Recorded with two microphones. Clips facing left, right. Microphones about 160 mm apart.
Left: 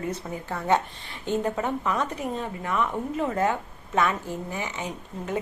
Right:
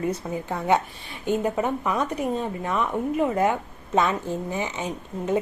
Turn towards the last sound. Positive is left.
turn(degrees=-20)  # may be behind; listen again after turning